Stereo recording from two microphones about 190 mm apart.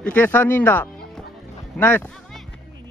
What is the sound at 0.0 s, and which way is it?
Speech, 10° left (ahead or behind).